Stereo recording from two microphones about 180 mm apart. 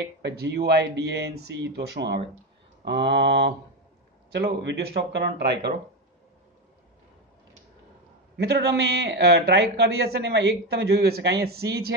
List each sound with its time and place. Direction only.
0.2 s speech: 65° right (ahead or behind)
8.4 s speech: 70° right (ahead or behind)